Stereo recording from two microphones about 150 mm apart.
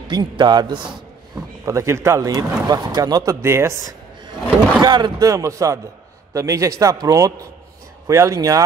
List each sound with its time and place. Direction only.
0.1 s speech: 30° right (ahead or behind)
4.3 s speech: 30° right (ahead or behind)